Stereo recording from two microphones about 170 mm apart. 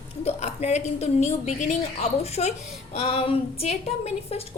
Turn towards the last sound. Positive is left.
turn(degrees=35)  # may be behind; listen again after turning